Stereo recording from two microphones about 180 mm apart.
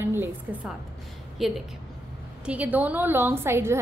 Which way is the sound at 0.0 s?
15° right (ahead or behind).